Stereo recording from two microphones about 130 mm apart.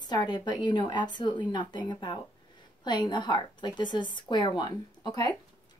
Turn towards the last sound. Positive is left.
turn(degrees=35)  # may be behind; listen again after turning